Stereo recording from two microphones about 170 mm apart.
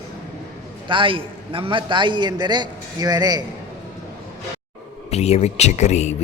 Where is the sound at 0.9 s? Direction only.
30° right (ahead or behind).